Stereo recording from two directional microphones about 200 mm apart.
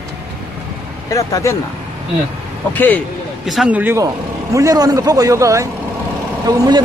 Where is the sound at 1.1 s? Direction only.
15° left (ahead or behind).